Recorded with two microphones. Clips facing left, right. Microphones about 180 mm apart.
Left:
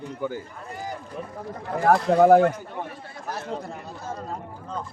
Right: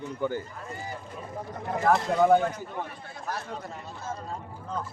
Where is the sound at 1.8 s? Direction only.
55° left (ahead or behind); by 2.5 s 75° left (ahead or behind).